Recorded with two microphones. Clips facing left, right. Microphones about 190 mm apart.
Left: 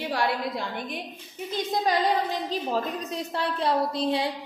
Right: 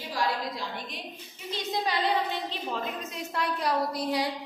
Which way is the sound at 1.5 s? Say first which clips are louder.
Left 5 dB; 45° left (ahead or behind).